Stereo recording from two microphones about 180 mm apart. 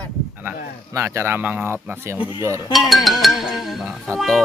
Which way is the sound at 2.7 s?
Centre (ahead or behind).